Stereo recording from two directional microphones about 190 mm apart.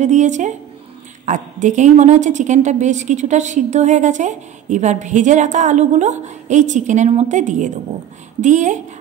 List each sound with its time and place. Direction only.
0.0 s a woman's voice: 40° right (ahead or behind)